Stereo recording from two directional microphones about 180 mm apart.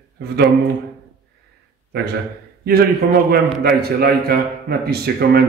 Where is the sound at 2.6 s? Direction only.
60° right (ahead or behind).